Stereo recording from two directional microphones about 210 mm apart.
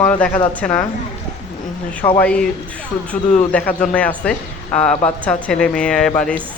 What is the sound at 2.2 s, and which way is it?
Speech, 5° left (ahead or behind).